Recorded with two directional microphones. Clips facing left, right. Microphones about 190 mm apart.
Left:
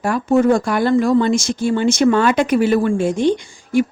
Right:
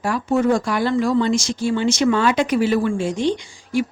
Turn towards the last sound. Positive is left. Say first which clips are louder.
# left 5 dB
turn(degrees=50)  # may be behind; listen again after turning